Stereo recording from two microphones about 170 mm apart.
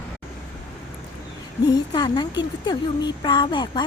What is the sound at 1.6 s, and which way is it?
Speech, 25° left (ahead or behind).